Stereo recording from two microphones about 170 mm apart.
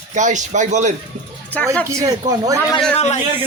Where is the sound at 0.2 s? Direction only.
45° right (ahead or behind).